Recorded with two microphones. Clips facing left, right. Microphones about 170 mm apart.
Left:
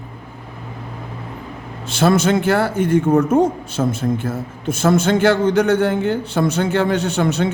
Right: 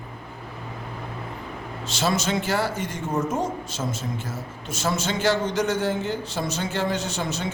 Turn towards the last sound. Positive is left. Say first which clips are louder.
# left 10 dB
turn(degrees=60)  # may be behind; listen again after turning